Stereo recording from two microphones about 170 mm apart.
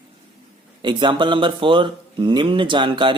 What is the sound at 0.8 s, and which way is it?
Speech, 25° right (ahead or behind).